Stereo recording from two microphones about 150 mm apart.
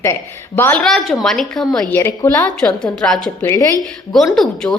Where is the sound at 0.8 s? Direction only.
Centre (ahead or behind); by 2.3 s 15° left (ahead or behind).